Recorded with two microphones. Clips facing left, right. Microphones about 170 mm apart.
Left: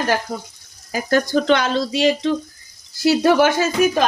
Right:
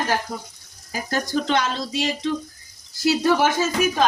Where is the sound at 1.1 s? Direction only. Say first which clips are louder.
Left 6 dB; 70° left (ahead or behind).